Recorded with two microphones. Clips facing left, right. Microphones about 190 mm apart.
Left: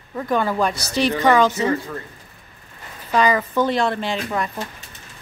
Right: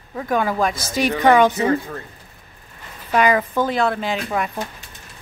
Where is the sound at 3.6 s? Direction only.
Centre (ahead or behind).